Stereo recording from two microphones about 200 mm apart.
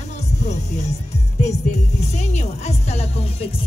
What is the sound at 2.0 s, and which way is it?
Music, 35° left (ahead or behind).